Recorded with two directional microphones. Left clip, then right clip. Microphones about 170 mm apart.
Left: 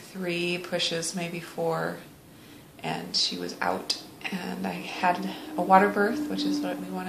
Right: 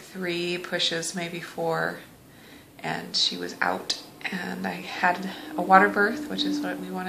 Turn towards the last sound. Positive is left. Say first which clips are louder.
# right 1 dB
turn(degrees=-10)  # may be behind; listen again after turning